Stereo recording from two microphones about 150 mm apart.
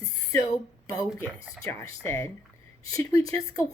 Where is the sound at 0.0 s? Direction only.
20° left (ahead or behind).